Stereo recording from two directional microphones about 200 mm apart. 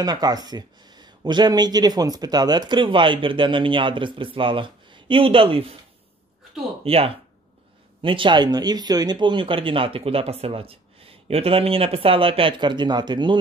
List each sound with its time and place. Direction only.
0.0 s speech: 20° right (ahead or behind)
6.8 s speech: 30° right (ahead or behind)